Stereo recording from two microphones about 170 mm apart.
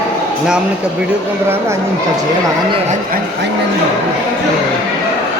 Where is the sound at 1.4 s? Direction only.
15° right (ahead or behind).